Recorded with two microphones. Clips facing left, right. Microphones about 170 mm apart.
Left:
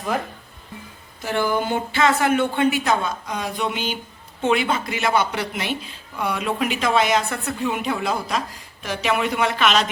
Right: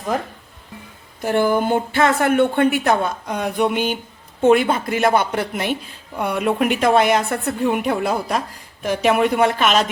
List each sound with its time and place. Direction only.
1.2 s a woman's voice: 55° right (ahead or behind)